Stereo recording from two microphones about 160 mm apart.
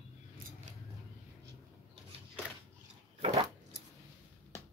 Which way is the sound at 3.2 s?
45° right (ahead or behind).